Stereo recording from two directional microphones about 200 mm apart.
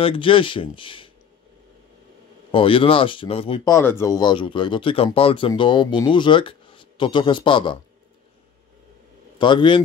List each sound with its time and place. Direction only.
0.0 s speech: 25° left (ahead or behind)
2.5 s speech: 25° left (ahead or behind)
3.7 s speech: 15° left (ahead or behind)
9.4 s speech: 25° left (ahead or behind)